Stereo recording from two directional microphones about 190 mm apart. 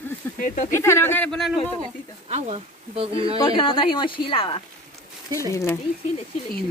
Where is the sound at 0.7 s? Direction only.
15° left (ahead or behind).